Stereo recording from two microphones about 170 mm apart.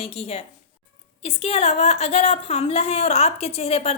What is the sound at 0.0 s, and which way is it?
A woman's voice, 35° left (ahead or behind).